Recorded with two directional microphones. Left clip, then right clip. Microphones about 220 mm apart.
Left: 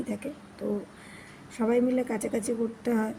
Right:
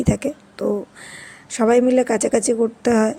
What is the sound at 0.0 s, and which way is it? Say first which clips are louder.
Speech: right 13 dB; 50° right (ahead or behind).